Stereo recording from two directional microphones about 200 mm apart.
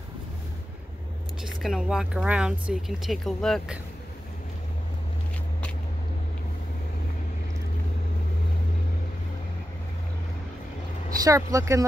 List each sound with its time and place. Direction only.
1.4 s speech: centre (ahead or behind)
11.2 s speech: 15° right (ahead or behind)